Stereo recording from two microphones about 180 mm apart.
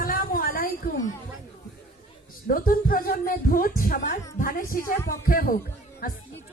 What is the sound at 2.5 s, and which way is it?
A woman's voice, 50° left (ahead or behind).